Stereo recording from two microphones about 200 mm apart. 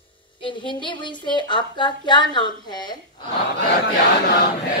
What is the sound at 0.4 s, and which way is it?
A woman's voice, 25° left (ahead or behind).